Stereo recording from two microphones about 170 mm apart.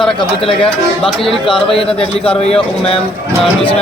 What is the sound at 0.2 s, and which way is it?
Speech, 30° left (ahead or behind).